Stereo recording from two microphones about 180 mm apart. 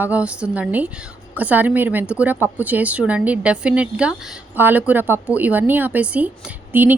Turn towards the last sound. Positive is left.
turn(degrees=-10)  # may be behind; listen again after turning